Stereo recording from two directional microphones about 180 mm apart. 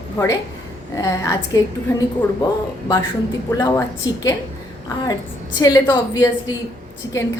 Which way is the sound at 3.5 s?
15° left (ahead or behind).